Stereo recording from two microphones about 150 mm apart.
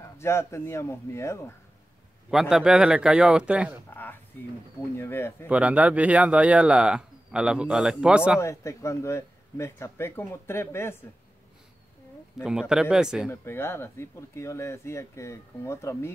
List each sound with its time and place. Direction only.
0.2 s speech: 20° left (ahead or behind)
2.5 s speech: 5° right (ahead or behind)
3.9 s a sound: 10° left (ahead or behind)
4.9 s speech: 15° left (ahead or behind)
5.5 s speech: 10° right (ahead or behind)
8.4 s speech: 20° left (ahead or behind)
12.4 s speech: 5° right (ahead or behind)
13.3 s speech: 15° left (ahead or behind)